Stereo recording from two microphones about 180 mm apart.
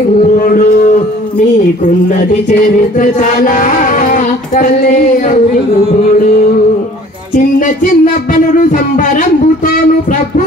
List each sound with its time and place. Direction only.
0.4 s a sound: 45° left (ahead or behind)
3.0 s child singing: 45° left (ahead or behind)
7.3 s music: 45° left (ahead or behind)
8.9 s speech: 45° left (ahead or behind)